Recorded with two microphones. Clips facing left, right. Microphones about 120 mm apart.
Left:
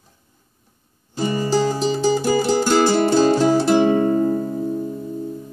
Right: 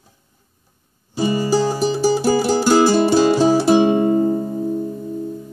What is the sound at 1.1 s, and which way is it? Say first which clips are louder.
Music: right 2 dB; 15° right (ahead or behind).